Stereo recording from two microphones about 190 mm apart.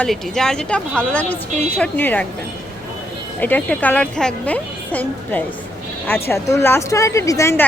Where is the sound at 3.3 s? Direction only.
10° left (ahead or behind).